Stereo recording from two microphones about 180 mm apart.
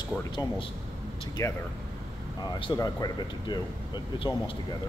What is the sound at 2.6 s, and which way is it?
Speech, 25° left (ahead or behind).